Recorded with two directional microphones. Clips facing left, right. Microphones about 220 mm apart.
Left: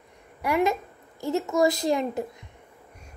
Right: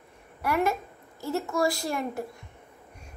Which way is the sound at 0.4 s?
15° left (ahead or behind).